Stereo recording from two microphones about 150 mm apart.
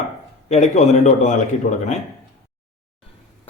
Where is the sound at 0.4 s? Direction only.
45° left (ahead or behind).